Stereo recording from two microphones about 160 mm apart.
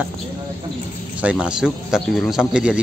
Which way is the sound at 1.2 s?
5° right (ahead or behind).